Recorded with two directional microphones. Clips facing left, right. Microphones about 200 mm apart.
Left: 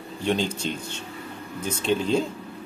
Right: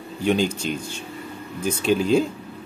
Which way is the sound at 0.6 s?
30° left (ahead or behind).